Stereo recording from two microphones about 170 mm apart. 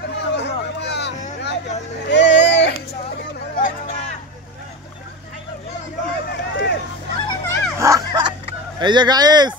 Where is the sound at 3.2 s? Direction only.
60° left (ahead or behind).